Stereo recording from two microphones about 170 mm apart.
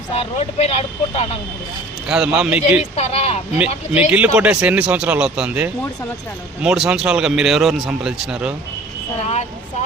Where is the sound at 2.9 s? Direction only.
40° left (ahead or behind).